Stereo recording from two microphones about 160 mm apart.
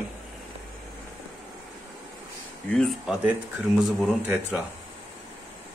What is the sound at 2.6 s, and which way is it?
Speech, 5° left (ahead or behind).